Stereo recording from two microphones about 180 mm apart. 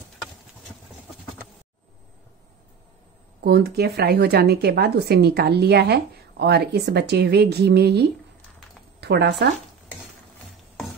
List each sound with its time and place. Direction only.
3.4 s a woman's voice: 60° right (ahead or behind)